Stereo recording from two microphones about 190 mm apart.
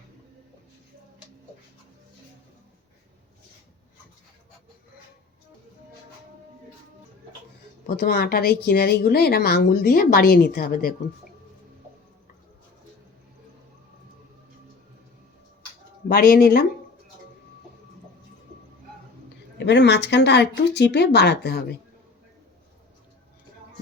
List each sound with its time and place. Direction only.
7.9 s a woman's voice: 55° left (ahead or behind)
16.0 s a woman's voice: 55° left (ahead or behind)
19.5 s a woman's voice: 65° left (ahead or behind)